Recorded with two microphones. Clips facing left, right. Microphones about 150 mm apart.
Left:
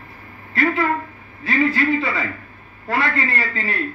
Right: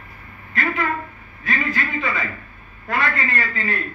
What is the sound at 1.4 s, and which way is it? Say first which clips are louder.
A man's voice: left 6 dB; 30° left (ahead or behind).